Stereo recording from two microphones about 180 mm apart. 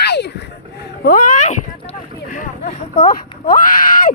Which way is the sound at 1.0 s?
45° left (ahead or behind).